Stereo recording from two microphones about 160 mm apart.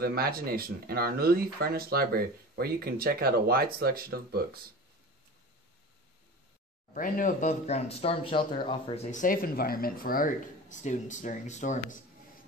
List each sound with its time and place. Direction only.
0.0 s speech: 70° right (ahead or behind)
6.9 s speech: 55° left (ahead or behind)